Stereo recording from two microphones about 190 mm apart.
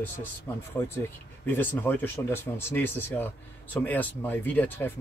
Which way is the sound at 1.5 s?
10° left (ahead or behind).